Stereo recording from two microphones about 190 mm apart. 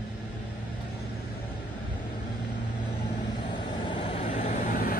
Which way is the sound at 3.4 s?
25° left (ahead or behind).